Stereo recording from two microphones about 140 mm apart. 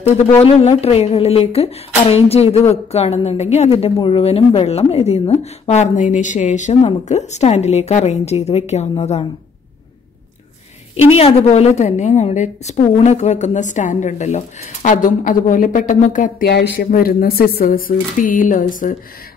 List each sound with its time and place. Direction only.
0.4 s speech: 45° left (ahead or behind)
11.1 s a woman's voice: 45° left (ahead or behind); by 18.9 s 70° left (ahead or behind)